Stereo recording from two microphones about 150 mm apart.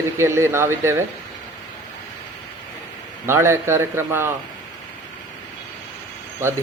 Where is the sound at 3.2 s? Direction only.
15° right (ahead or behind).